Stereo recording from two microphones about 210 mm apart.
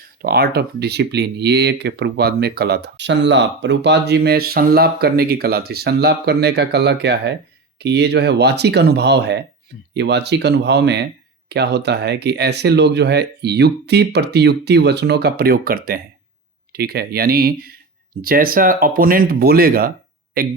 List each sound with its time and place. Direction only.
0.2 s speech: 45° right (ahead or behind)